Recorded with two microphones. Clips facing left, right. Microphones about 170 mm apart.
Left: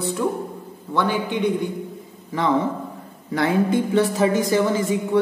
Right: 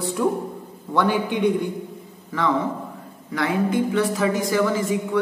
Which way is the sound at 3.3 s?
30° left (ahead or behind).